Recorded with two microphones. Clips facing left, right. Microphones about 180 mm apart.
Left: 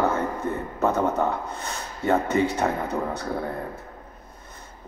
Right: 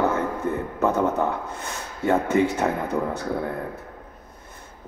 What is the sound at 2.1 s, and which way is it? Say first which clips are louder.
A man's voice: right 1 dB; 50° right (ahead or behind).